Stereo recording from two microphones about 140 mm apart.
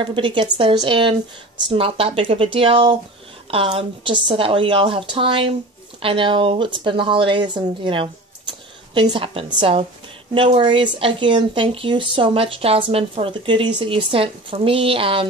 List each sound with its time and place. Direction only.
0.0 s a woman's voice: 35° right (ahead or behind)